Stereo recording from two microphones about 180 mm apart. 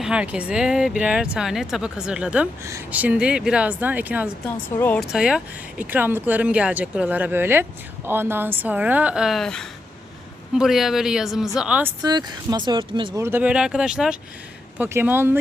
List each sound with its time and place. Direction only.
0.0 s speech: 5° right (ahead or behind)
4.7 s speech: 10° left (ahead or behind)
5.1 s speech: 5° right (ahead or behind)
12.0 s speech: 20° right (ahead or behind)
13.2 s speech: 10° right (ahead or behind)